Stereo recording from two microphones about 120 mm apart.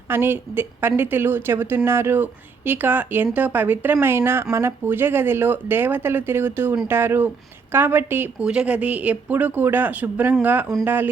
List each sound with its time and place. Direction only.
0.1 s a woman's voice: 20° right (ahead or behind)